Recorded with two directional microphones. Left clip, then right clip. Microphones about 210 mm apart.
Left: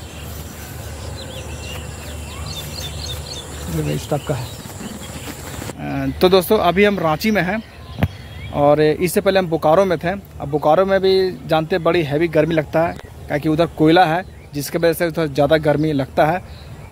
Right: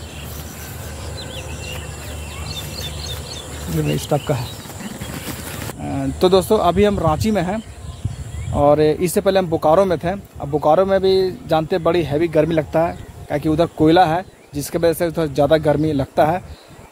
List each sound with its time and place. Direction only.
2.7 s a sound: 50° left (ahead or behind)
4.1 s speech: 60° right (ahead or behind)
5.9 s speech: centre (ahead or behind)